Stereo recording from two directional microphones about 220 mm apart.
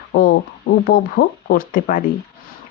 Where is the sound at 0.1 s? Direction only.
40° left (ahead or behind).